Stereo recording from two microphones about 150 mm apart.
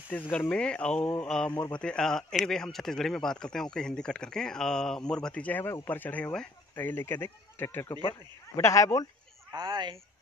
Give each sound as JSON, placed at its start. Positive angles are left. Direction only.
{"t": 0.1, "sound": "speech", "side_deg": 10}
{"t": 9.5, "sound": "speech", "side_deg": -25}